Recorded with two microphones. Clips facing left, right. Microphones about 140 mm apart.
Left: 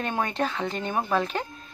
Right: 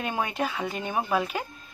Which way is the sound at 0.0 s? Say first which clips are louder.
Left 1 dB; 10° right (ahead or behind).